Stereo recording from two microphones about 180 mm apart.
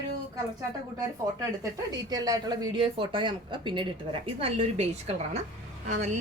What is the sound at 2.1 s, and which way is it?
A woman's voice, 20° right (ahead or behind).